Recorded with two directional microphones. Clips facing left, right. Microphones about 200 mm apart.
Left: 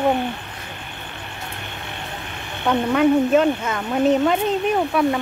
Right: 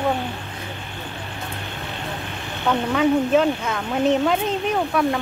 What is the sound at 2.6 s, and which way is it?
Speech, 5° left (ahead or behind).